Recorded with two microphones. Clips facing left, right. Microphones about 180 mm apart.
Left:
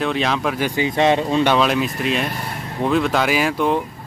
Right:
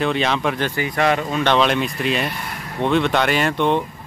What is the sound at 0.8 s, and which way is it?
Speech, 20° left (ahead or behind).